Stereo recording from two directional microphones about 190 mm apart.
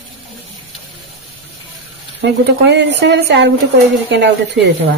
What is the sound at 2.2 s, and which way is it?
Speech, 65° right (ahead or behind).